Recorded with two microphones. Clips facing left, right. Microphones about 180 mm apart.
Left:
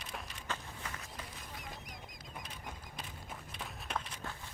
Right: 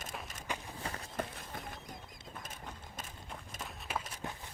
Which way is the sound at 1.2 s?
55° right (ahead or behind).